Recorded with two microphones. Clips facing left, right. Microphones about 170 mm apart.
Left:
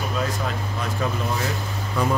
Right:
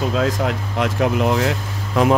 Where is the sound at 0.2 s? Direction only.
85° right.